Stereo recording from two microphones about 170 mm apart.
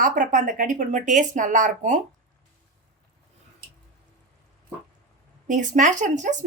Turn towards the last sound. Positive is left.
turn(degrees=-45)  # may be behind; listen again after turning